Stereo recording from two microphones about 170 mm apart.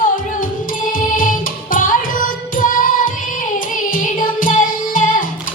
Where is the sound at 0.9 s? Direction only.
55° left (ahead or behind).